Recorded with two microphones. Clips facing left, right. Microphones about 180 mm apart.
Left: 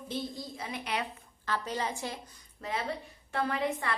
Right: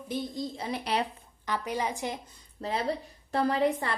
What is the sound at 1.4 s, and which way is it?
Speech, 15° right (ahead or behind).